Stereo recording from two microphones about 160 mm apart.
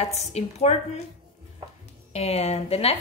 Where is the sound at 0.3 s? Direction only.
40° left (ahead or behind).